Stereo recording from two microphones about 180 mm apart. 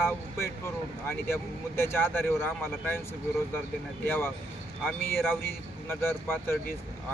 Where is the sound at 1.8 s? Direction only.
15° left (ahead or behind).